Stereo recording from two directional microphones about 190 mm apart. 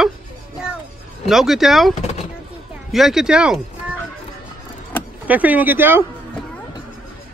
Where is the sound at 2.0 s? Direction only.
35° left (ahead or behind).